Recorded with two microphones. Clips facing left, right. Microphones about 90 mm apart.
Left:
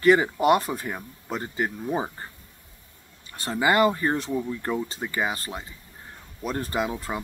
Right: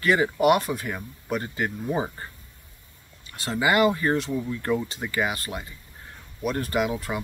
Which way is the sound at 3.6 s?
30° left (ahead or behind).